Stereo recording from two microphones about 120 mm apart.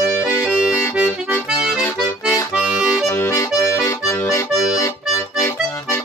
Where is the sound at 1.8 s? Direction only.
20° left (ahead or behind).